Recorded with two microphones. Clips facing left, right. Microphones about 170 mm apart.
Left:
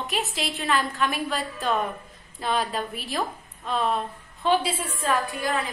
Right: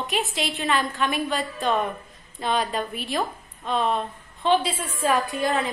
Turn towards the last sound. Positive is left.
turn(degrees=-20)  # may be behind; listen again after turning